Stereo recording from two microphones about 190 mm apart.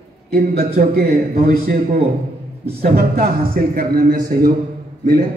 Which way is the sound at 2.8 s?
50° right (ahead or behind).